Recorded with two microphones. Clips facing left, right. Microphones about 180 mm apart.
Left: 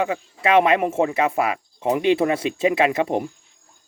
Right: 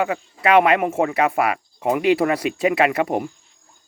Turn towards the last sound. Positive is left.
turn(degrees=25)  # may be behind; listen again after turning